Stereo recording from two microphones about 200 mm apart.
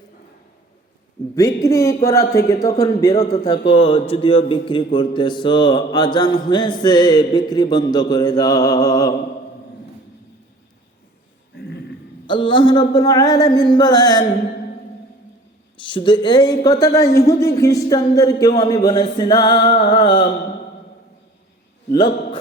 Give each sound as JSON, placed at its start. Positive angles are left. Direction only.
{"t": 1.4, "sound": "a man's voice", "side_deg": 15}
{"t": 3.4, "sound": "mantra", "side_deg": 25}
{"t": 12.2, "sound": "mantra", "side_deg": 25}
{"t": 15.8, "sound": "mantra", "side_deg": 25}
{"t": 21.9, "sound": "a man's voice", "side_deg": 20}